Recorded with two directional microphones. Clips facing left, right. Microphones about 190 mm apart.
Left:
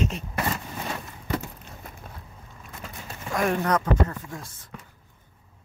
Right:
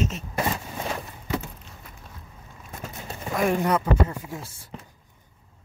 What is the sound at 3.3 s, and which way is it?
Speech, 5° right (ahead or behind).